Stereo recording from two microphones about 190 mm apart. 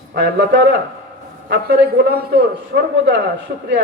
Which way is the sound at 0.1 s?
65° right (ahead or behind).